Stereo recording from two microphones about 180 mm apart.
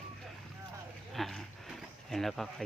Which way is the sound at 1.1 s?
Centre (ahead or behind).